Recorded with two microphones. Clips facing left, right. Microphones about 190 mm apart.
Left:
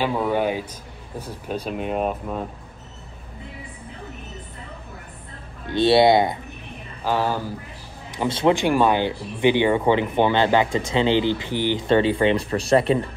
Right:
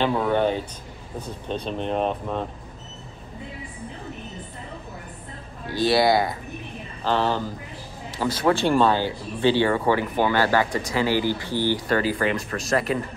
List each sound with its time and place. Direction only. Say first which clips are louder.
0.0 s speech: right 1 dB; 5° left (ahead or behind)
5.7 s speech: left 4 dB; 25° left (ahead or behind)
7.1 s speech: even; 10° left (ahead or behind)
8.1 s speech: left 2 dB; 25° left (ahead or behind)
8.5 s speech: left 1 dB; 15° left (ahead or behind); by 13.0 s 30° left (ahead or behind)